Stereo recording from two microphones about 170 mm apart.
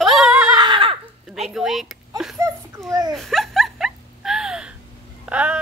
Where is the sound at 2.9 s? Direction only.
20° right (ahead or behind).